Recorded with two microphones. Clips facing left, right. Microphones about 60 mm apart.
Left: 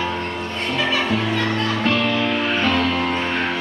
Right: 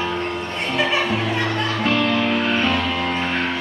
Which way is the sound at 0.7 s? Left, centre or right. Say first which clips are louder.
Even; centre.